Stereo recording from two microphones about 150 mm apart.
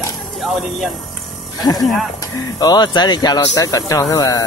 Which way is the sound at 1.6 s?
25° left (ahead or behind).